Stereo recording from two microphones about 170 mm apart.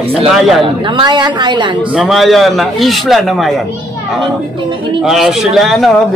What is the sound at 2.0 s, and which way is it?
A man's voice, centre (ahead or behind).